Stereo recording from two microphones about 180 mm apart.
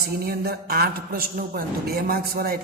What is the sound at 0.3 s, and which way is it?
A man's voice, 60° right (ahead or behind).